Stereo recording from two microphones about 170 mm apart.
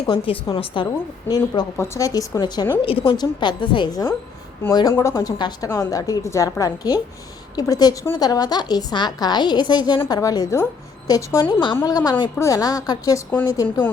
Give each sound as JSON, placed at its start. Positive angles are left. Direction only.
{"t": 0.1, "sound": "a woman's voice", "side_deg": 30}